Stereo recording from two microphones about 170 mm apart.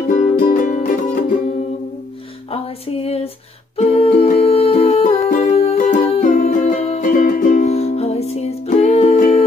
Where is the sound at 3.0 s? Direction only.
35° left (ahead or behind).